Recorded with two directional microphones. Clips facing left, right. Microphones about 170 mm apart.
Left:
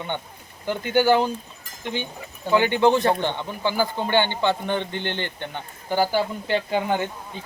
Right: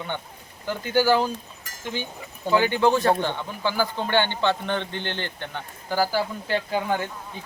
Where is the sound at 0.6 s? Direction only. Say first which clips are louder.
Left 2 dB; 20° left (ahead or behind).